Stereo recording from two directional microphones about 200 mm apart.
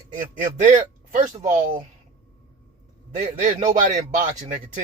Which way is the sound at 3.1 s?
35° right (ahead or behind).